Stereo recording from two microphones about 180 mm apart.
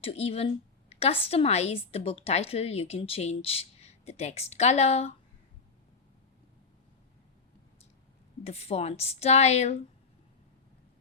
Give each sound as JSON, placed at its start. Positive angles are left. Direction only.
{"t": 0.0, "sound": "a woman's voice", "side_deg": 35}
{"t": 8.4, "sound": "a woman's voice", "side_deg": 35}